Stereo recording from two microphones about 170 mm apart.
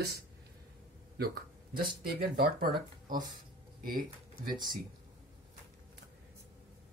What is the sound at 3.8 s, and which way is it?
Speech, 55° right (ahead or behind).